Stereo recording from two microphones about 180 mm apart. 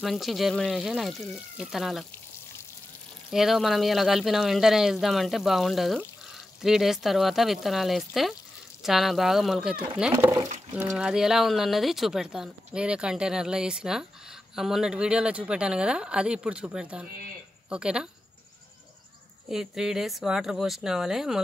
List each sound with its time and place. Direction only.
0.0 s speech: centre (ahead or behind)
3.3 s speech: centre (ahead or behind)
10.1 s a sound: 20° right (ahead or behind)
10.9 s speech: 5° right (ahead or behind)
19.5 s speech: 5° right (ahead or behind)